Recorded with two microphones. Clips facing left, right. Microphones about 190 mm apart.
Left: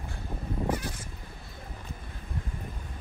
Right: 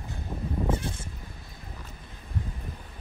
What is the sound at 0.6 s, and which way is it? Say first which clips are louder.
Cat: even; 25° right (ahead or behind).